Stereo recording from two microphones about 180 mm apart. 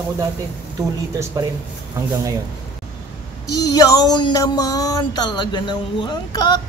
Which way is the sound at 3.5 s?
20° left (ahead or behind).